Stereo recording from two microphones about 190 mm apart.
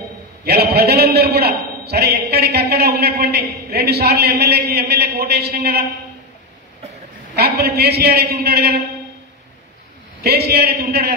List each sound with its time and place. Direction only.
0.5 s a man's voice: 55° right (ahead or behind)
7.3 s a man's voice: 55° right (ahead or behind)
10.2 s a man's voice: 55° right (ahead or behind)